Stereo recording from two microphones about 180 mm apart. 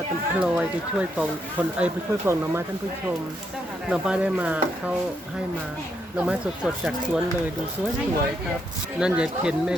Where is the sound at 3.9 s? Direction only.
5° right (ahead or behind).